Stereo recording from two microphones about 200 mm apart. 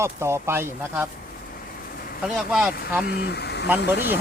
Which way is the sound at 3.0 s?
50° left (ahead or behind).